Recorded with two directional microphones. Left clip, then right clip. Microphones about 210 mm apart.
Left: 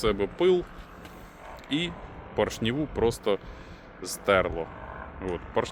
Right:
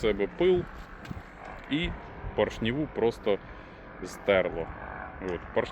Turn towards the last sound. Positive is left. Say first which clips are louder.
# left 1 dB
turn(degrees=10)  # may be behind; listen again after turning